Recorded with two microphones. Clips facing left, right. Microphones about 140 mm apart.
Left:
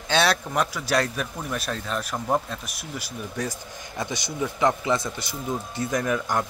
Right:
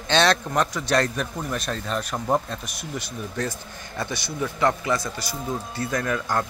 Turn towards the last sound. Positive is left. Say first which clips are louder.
# even
turn(degrees=15)  # may be behind; listen again after turning